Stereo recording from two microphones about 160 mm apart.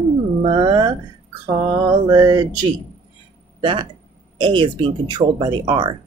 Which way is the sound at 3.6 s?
35° right (ahead or behind).